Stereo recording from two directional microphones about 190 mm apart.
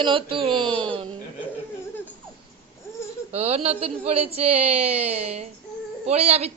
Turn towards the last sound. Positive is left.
turn(degrees=-35)  # may be behind; listen again after turning